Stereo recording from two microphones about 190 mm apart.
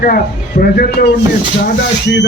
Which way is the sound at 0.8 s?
55° left (ahead or behind).